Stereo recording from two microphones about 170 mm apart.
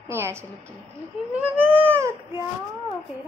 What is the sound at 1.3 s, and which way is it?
Baby cry, 10° right (ahead or behind).